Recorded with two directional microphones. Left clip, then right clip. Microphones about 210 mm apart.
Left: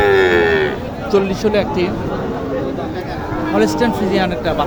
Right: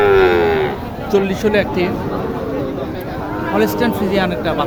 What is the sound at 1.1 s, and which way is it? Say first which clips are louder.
Speech: even; 10° right (ahead or behind).